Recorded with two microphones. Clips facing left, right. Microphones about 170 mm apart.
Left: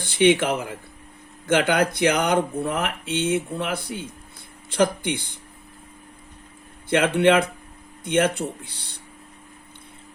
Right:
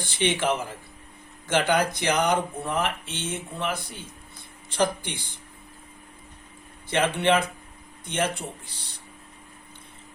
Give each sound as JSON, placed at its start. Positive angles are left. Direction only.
{"t": 0.2, "sound": "speech", "side_deg": 55}
{"t": 4.8, "sound": "speech", "side_deg": 60}
{"t": 6.9, "sound": "speech", "side_deg": 60}